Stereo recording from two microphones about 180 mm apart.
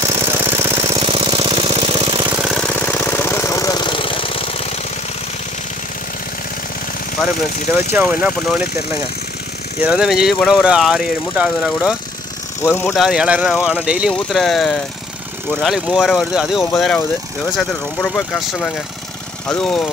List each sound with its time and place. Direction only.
0.0 s engine: 15° right (ahead or behind)
0.9 s engine: 30° right (ahead or behind)
2.3 s engine: 5° right (ahead or behind)
2.6 s engine: 10° left (ahead or behind); by 4.6 s 30° left (ahead or behind)
7.9 s speech: 10° right (ahead or behind)
9.8 s speech: 5° right (ahead or behind)
12.6 s speech: 15° left (ahead or behind)
12.9 s speech: centre (ahead or behind)